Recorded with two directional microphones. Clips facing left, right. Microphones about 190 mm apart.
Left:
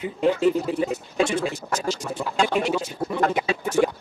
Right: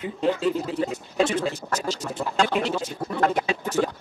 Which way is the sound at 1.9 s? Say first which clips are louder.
Left 1 dB; 10° left (ahead or behind).